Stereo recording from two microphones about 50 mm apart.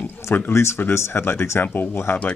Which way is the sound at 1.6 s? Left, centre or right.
Left.